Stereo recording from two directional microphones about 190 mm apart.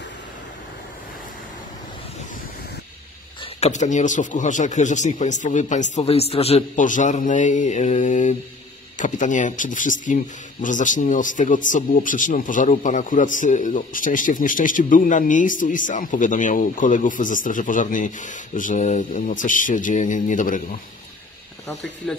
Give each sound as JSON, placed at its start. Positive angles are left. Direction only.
{"t": 3.6, "sound": "speech", "side_deg": 40}